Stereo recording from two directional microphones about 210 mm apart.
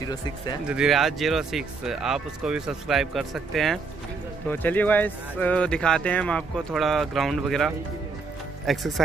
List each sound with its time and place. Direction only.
0.0 s speech: 20° left (ahead or behind)
0.7 s speech: centre (ahead or behind)